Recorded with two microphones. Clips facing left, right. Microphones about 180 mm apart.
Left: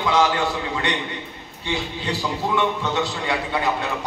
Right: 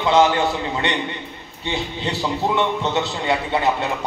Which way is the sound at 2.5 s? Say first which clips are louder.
Even; 25° right (ahead or behind).